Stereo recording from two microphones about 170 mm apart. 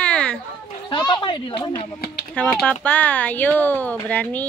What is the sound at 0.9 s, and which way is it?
Speech, 30° left (ahead or behind).